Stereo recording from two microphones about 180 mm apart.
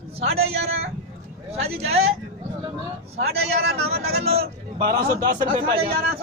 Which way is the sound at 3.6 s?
65° right (ahead or behind).